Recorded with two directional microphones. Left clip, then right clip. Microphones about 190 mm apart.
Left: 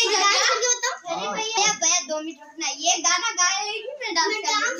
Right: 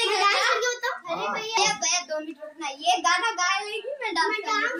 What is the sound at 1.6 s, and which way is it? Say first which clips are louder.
Child singing: left 3 dB; 45° left (ahead or behind).